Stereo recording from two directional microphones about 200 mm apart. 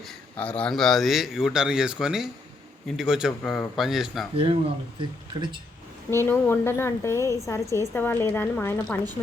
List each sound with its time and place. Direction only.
0.0 s speech: 5° left (ahead or behind)
4.9 s speech: 25° right (ahead or behind)
6.1 s a woman's voice: 10° left (ahead or behind)